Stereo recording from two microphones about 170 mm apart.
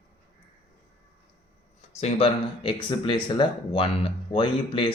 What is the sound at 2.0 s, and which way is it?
Speech, 35° left (ahead or behind).